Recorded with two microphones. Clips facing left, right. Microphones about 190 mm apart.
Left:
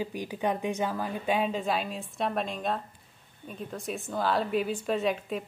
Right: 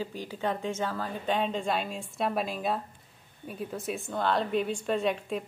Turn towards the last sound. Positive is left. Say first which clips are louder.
# even
turn(degrees=0)  # may be behind; listen again after turning